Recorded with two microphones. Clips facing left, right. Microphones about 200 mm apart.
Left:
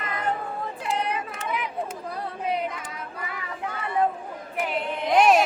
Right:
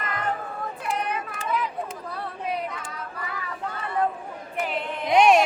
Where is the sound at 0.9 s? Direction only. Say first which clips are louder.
Left 1 dB; 30° left (ahead or behind).